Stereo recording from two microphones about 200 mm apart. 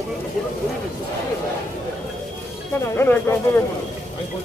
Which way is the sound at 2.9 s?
10° left (ahead or behind).